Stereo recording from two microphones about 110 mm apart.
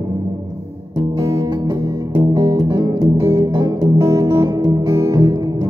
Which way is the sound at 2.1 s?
40° right (ahead or behind).